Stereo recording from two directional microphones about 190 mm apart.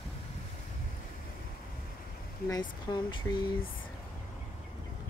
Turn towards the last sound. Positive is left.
turn(degrees=20)  # may be behind; listen again after turning